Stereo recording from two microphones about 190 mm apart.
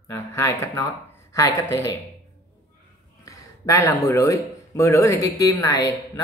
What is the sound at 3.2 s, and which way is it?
A man's voice, 15° left (ahead or behind).